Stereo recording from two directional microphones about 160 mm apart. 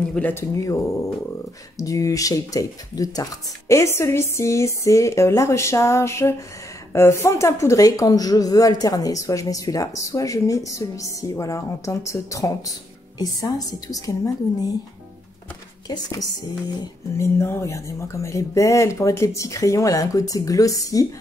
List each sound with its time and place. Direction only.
0.1 s speech: 10° left (ahead or behind)
15.9 s speech: 25° left (ahead or behind)
17.4 s speech: 15° left (ahead or behind)